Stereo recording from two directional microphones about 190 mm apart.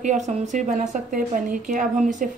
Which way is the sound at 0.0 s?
40° right (ahead or behind).